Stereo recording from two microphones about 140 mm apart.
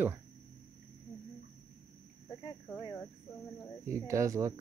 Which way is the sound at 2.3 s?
30° left (ahead or behind).